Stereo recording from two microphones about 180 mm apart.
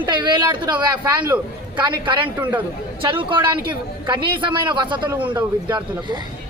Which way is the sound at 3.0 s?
30° right (ahead or behind).